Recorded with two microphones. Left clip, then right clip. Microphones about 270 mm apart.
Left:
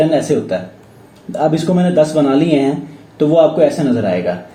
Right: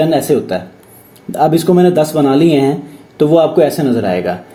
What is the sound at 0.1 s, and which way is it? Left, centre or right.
Speech, right.